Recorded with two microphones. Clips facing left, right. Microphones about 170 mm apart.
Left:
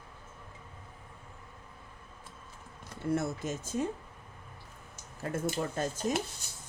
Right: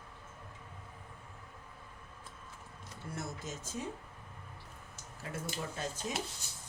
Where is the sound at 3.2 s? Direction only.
55° left (ahead or behind).